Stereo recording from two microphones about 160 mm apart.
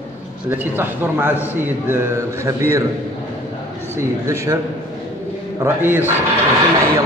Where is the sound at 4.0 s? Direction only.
20° right (ahead or behind).